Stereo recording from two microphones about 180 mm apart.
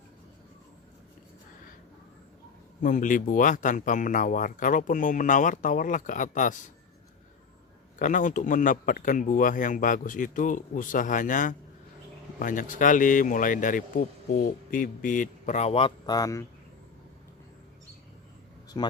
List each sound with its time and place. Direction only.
2.8 s speech: 45° left (ahead or behind)
7.9 s speech: 45° left (ahead or behind); by 16.5 s 20° left (ahead or behind)
18.8 s speech: 25° left (ahead or behind)